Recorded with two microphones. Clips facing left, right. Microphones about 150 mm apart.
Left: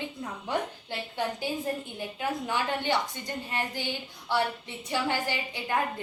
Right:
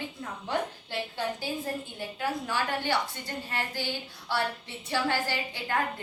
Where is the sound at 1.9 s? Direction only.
20° left (ahead or behind).